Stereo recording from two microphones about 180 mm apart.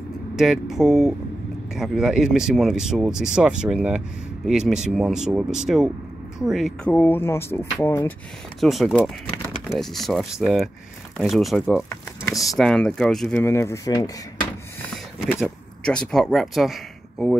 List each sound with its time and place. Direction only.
0.4 s speech: centre (ahead or behind)
6.9 s speech: 10° left (ahead or behind)
8.5 s speech: centre (ahead or behind)
13.4 s speech: 15° left (ahead or behind)
15.1 s speech: centre (ahead or behind)